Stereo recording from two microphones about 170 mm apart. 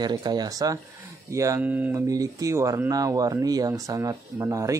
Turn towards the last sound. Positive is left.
turn(degrees=-20)  # may be behind; listen again after turning